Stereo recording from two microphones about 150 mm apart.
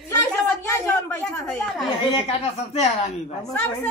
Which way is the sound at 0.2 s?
15° left (ahead or behind).